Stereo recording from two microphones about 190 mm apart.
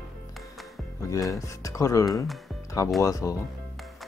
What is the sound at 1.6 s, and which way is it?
Speech, 15° left (ahead or behind).